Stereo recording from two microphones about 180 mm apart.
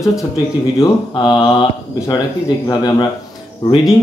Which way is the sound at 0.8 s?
25° left (ahead or behind).